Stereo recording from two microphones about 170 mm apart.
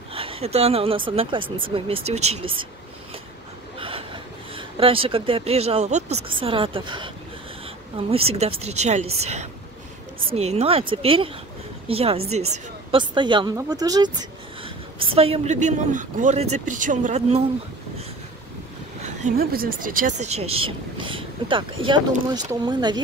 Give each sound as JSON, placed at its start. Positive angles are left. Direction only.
{"t": 0.1, "sound": "speech", "side_deg": -35}
{"t": 3.8, "sound": "speech", "side_deg": -30}
{"t": 8.1, "sound": "speech", "side_deg": -35}
{"t": 14.6, "sound": "a woman's voice", "side_deg": -30}
{"t": 19.0, "sound": "speech", "side_deg": -50}